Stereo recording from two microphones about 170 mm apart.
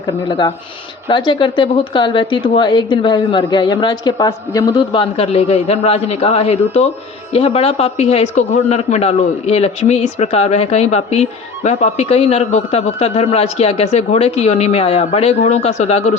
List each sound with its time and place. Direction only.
0.3 s a man's voice: 30° left (ahead or behind)